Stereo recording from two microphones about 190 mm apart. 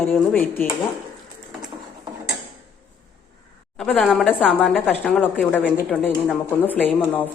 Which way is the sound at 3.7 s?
5° left (ahead or behind).